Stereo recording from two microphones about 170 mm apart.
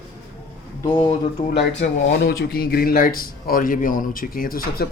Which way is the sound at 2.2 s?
65° left (ahead or behind).